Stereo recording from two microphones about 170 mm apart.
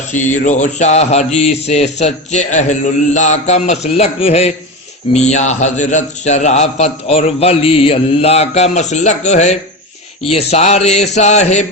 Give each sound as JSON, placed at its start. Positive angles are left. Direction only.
{"t": 0.1, "sound": "mantra", "side_deg": 45}